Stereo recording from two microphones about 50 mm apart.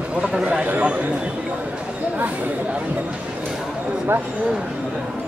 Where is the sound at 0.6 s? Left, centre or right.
Right.